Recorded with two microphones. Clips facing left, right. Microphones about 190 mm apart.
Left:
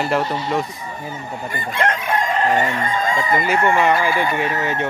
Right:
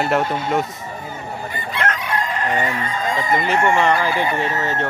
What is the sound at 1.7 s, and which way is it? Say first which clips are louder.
Chicken: left 3 dB; 45° left (ahead or behind).